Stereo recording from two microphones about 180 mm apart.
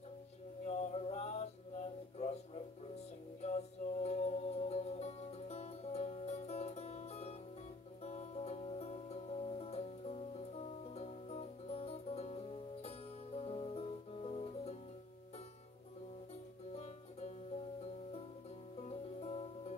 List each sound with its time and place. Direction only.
0.7 s a sound: 35° left (ahead or behind)
3.4 s music: 35° left (ahead or behind)
16.7 s music: 35° left (ahead or behind)
18.8 s music: 35° left (ahead or behind)